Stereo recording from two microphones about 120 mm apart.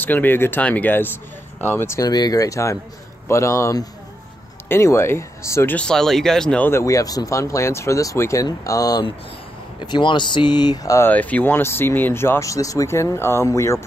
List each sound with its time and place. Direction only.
0.0 s speech: 15° left (ahead or behind)
2.0 s speech: 35° left (ahead or behind)
5.8 s speech: 5° left (ahead or behind)
6.7 s speech: 25° left (ahead or behind)
9.8 s speech: 40° left (ahead or behind)
11.1 s speech: 15° left (ahead or behind)